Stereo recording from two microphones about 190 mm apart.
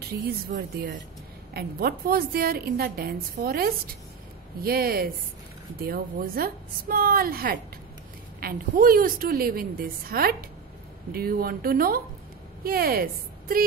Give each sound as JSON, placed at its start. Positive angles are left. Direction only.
{"t": 0.0, "sound": "a woman's voice", "side_deg": -55}